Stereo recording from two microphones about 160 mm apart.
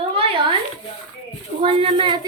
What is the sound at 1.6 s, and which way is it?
Speech, 35° right (ahead or behind).